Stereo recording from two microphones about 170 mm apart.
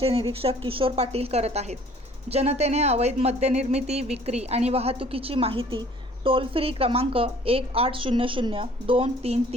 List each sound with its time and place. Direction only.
0.0 s speech: 35° right (ahead or behind)